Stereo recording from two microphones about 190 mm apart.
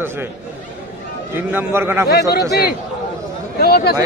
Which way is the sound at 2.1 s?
55° left (ahead or behind).